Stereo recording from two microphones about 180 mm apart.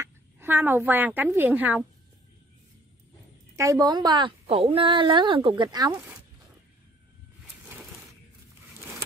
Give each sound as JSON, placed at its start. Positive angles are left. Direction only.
{"t": 0.0, "sound": "a woman's voice", "side_deg": -10}
{"t": 3.5, "sound": "a woman's voice", "side_deg": -15}